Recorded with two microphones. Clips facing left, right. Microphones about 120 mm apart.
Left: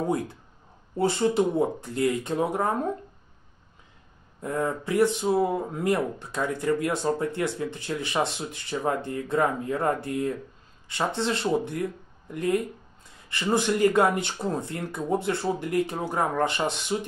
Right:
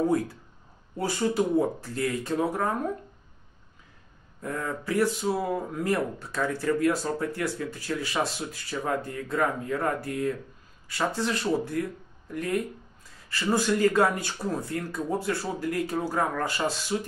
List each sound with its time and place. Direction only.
0.9 s speech: 25° left (ahead or behind)
4.4 s speech: 20° left (ahead or behind)